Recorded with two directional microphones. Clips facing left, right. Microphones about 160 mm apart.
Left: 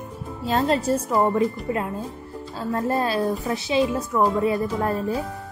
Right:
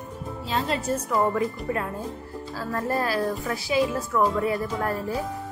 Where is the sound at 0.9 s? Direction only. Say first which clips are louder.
Left 3 dB; 25° left (ahead or behind).